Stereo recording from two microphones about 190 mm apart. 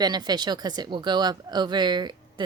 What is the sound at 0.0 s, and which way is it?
A woman's voice, 20° right (ahead or behind).